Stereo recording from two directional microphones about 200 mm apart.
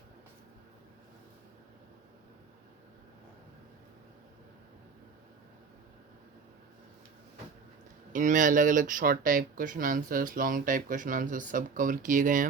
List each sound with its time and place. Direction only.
8.1 s speech: 40° right (ahead or behind)